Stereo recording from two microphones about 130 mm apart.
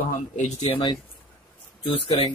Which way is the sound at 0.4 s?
55° left (ahead or behind).